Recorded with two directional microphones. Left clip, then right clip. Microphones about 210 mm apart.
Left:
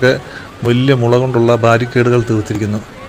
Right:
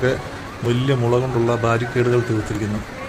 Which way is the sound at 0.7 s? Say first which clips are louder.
Left 7 dB; 25° left (ahead or behind).